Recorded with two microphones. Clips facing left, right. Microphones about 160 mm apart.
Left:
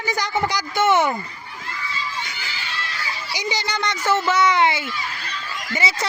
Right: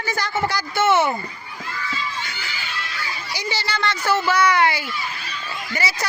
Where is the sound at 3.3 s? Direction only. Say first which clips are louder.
Left 1 dB; 20° left (ahead or behind).